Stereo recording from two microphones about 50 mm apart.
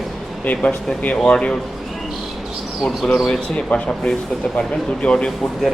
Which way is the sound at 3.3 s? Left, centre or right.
Left.